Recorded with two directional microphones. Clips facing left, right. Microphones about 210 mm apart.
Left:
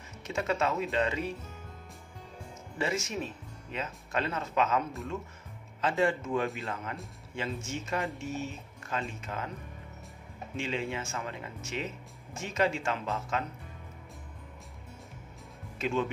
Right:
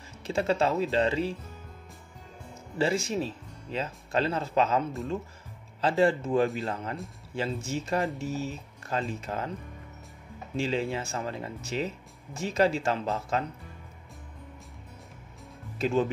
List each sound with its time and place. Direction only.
0.2 s speech: 30° right (ahead or behind)
2.8 s speech: 30° right (ahead or behind)
10.5 s speech: 35° right (ahead or behind)
15.8 s speech: 35° right (ahead or behind)